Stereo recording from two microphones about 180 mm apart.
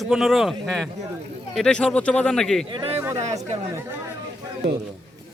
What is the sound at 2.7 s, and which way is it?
Speech, 30° right (ahead or behind).